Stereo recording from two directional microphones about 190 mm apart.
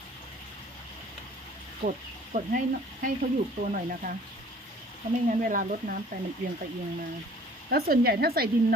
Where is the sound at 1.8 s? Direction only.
45° right (ahead or behind).